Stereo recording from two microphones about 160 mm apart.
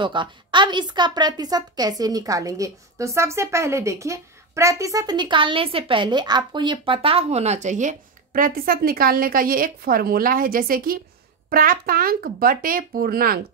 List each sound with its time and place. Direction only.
0.0 s a woman's voice: 30° right (ahead or behind); by 13.4 s 70° right (ahead or behind)